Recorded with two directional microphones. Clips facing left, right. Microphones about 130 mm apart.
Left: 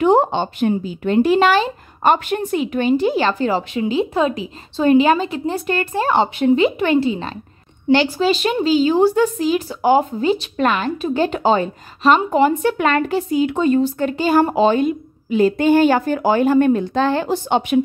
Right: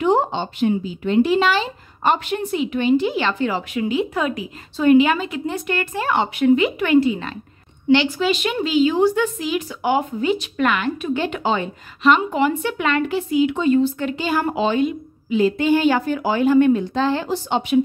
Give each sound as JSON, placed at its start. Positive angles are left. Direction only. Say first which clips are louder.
{"t": 0.0, "sound": "speech", "louder": "left 4 dB", "side_deg": 50}